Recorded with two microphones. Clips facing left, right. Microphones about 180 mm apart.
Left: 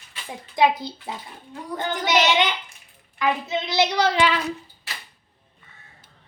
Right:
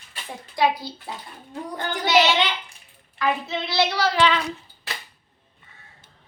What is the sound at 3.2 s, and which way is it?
A child's voice, 20° left (ahead or behind).